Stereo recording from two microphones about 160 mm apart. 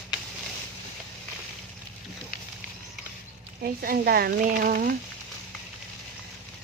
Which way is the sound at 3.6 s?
70° right (ahead or behind).